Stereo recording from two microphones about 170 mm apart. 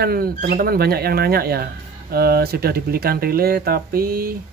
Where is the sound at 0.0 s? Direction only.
60° right (ahead or behind).